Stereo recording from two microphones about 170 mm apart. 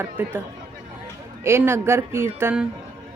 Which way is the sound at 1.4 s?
15° right (ahead or behind).